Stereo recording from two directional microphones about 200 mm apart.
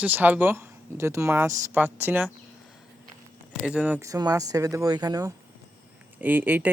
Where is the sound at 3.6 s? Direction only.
5° right (ahead or behind).